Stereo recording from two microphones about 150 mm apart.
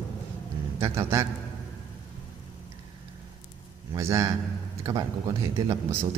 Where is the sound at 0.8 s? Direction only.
20° right (ahead or behind).